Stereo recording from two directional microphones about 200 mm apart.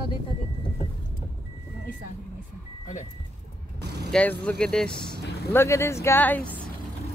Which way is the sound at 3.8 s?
55° right (ahead or behind).